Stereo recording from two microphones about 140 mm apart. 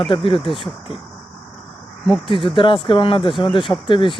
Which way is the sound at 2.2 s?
40° left (ahead or behind).